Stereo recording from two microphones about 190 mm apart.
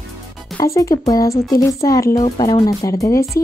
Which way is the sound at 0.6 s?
15° left (ahead or behind).